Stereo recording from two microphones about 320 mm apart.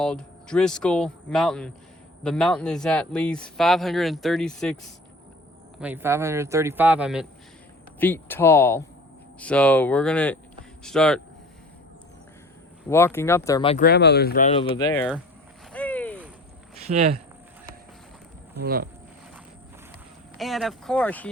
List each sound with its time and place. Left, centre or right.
0.0 s speech: centre
5.8 s speech: centre
12.9 s speech: centre
13.8 s speech: left; by 15.2 s centre
15.7 s a sound: centre
16.8 s speech: right
18.5 s speech: right
20.4 s speech: centre